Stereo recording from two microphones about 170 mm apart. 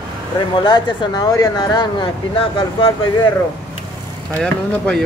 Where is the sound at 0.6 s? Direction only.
25° left (ahead or behind).